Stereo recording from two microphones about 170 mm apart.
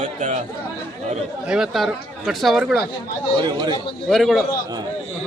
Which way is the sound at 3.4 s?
25° right (ahead or behind).